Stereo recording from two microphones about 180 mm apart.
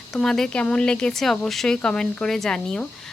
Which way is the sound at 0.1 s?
5° left (ahead or behind).